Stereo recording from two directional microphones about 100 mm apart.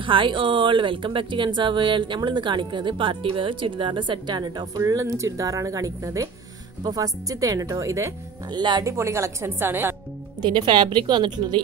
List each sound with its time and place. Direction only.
0.0 s speech: 55° right (ahead or behind); by 8.1 s 30° right (ahead or behind)
8.5 s speech: 45° right (ahead or behind)
8.8 s a woman's voice: 30° right (ahead or behind)
10.4 s speech: 50° right (ahead or behind)